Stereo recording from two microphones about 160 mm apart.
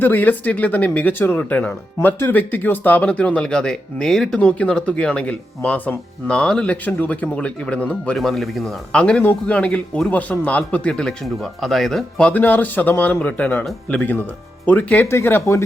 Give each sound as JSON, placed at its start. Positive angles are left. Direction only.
{"t": 0.0, "sound": "speech", "side_deg": 10}